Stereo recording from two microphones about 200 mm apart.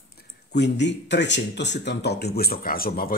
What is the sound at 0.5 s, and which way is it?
Speech, 60° left (ahead or behind).